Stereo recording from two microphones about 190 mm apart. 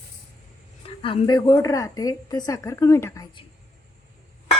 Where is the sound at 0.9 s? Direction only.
30° left (ahead or behind).